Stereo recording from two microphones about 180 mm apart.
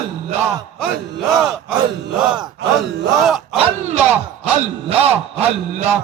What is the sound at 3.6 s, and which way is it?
Music, 35° right (ahead or behind).